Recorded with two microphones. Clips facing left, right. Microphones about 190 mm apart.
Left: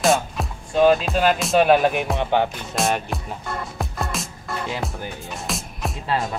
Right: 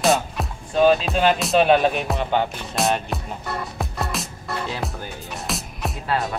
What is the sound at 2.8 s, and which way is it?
Music, centre (ahead or behind).